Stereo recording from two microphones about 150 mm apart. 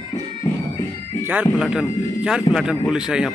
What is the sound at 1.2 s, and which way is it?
Speech, 10° right (ahead or behind).